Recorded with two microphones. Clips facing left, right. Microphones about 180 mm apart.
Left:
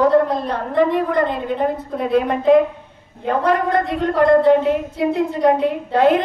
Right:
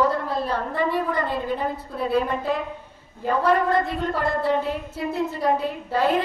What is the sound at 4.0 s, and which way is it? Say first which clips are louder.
A woman's voice: left 10 dB; 75° left (ahead or behind).